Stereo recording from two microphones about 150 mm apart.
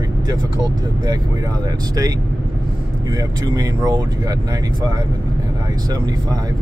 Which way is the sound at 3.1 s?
25° right (ahead or behind).